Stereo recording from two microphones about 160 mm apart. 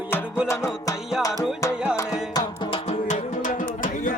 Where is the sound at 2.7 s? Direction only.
45° left (ahead or behind).